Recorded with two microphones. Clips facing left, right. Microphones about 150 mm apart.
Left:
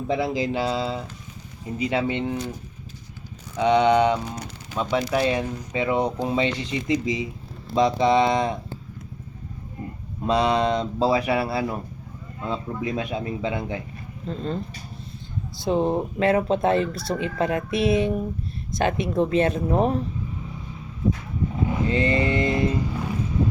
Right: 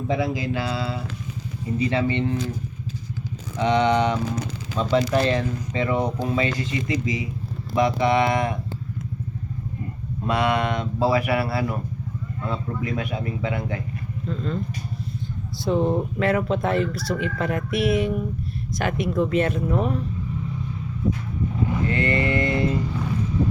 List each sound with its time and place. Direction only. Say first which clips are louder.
0.2 s speech: left 1 dB; 25° left (ahead or behind)
3.6 s speech: left 2 dB; 15° left (ahead or behind)
6.2 s speech: even; 25° left (ahead or behind)
10.2 s speech: left 2 dB; 20° left (ahead or behind)
14.3 s speech: even; 35° left (ahead or behind)
15.6 s speech: even; 20° left (ahead or behind)
21.8 s speech: left 2 dB; 20° left (ahead or behind)